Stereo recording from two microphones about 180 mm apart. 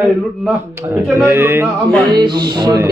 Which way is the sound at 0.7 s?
15° right (ahead or behind).